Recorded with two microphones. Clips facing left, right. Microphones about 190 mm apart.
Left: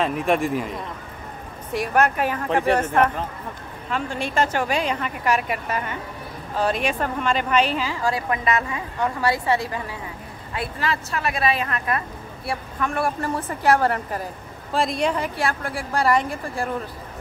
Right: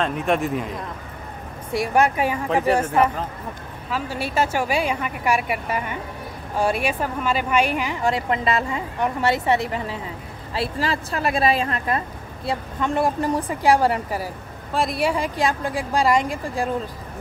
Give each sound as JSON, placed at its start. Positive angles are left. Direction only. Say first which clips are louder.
{"t": 0.0, "sound": "a man's voice", "louder": "left 1 dB", "side_deg": 0}
{"t": 1.7, "sound": "a woman's voice", "louder": "right 1 dB", "side_deg": -10}
{"t": 10.8, "sound": "a woman's voice", "louder": "even", "side_deg": -35}
{"t": 12.4, "sound": "a woman's voice", "louder": "right 3 dB", "side_deg": -20}